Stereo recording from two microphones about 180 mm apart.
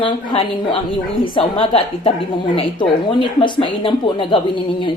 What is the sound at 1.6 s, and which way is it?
Speech, 30° left (ahead or behind).